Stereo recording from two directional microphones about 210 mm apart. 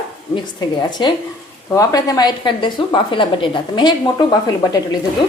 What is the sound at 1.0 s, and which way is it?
A woman's voice, 20° left (ahead or behind).